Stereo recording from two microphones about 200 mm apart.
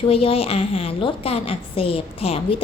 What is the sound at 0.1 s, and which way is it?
A woman's voice, 30° left (ahead or behind).